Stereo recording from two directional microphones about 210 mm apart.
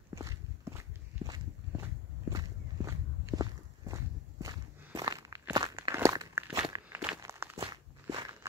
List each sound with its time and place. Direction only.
0.1 s walk: 15° right (ahead or behind)